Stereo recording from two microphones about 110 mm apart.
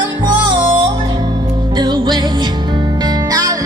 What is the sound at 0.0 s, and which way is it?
Music, 45° right (ahead or behind).